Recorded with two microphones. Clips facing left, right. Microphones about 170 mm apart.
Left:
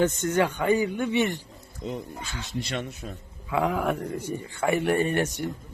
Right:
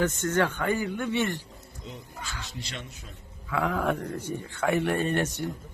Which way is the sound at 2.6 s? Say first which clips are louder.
Left 9 dB; 60° left (ahead or behind).